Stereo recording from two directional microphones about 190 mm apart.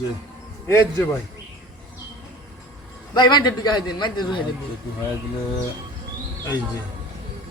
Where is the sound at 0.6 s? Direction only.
15° left (ahead or behind).